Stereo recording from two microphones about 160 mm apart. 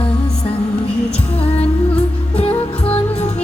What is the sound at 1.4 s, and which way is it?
Music, 40° left (ahead or behind).